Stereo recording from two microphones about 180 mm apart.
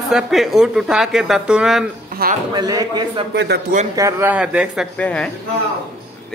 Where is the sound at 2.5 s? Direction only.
20° right (ahead or behind); by 4.9 s 5° right (ahead or behind).